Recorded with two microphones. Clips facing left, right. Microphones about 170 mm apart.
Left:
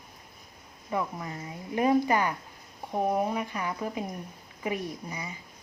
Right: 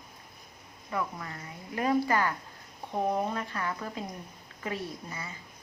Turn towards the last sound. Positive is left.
turn(degrees=15)  # may be behind; listen again after turning